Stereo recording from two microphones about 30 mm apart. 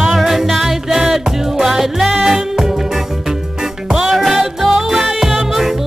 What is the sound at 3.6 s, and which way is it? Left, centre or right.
Music, right.